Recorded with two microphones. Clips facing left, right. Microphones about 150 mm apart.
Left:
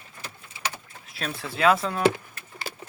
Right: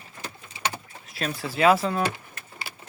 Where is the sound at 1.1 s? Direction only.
Centre (ahead or behind).